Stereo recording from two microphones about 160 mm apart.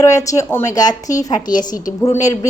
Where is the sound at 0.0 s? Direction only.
20° left (ahead or behind).